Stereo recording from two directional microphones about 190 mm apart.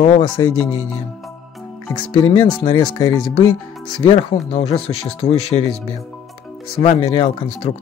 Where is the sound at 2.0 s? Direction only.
25° left (ahead or behind).